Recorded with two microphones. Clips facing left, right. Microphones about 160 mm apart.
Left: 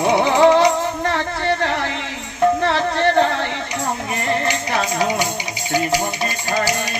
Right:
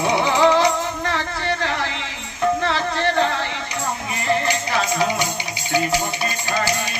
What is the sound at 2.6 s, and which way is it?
Music, 55° left (ahead or behind).